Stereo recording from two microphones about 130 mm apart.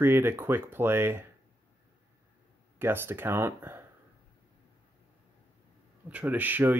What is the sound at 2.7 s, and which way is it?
Speech, 15° right (ahead or behind).